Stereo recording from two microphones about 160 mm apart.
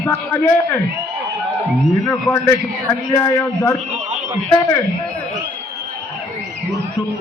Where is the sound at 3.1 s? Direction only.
20° left (ahead or behind).